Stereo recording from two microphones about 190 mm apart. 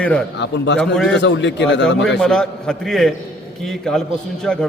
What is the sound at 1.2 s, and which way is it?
Speech, 70° left (ahead or behind).